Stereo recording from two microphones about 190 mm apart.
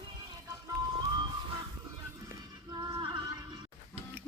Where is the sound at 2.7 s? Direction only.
20° right (ahead or behind).